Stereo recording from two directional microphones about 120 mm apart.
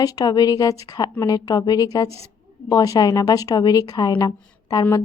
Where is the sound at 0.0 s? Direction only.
35° left (ahead or behind).